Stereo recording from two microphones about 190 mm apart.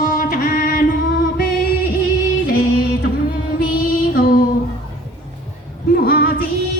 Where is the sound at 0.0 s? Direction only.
45° left (ahead or behind).